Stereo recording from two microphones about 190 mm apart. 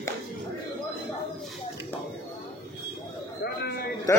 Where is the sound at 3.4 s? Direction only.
60° left (ahead or behind).